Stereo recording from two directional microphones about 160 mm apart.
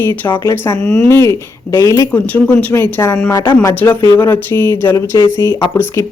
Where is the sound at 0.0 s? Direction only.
15° left (ahead or behind).